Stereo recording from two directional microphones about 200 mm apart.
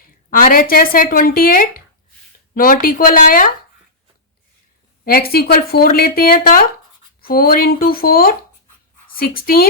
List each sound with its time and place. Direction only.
0.0 s speech: 45° left (ahead or behind)
5.0 s speech: 50° left (ahead or behind)